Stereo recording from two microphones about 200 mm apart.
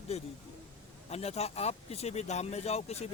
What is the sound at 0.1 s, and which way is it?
Speech, 30° left (ahead or behind).